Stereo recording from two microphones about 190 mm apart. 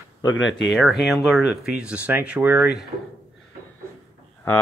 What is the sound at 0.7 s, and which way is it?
Speech, centre (ahead or behind).